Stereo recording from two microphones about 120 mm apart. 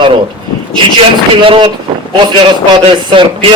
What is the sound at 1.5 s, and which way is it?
Speech, 45° right (ahead or behind).